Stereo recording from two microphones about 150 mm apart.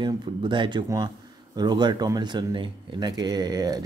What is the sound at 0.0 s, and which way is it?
Speech, 30° right (ahead or behind).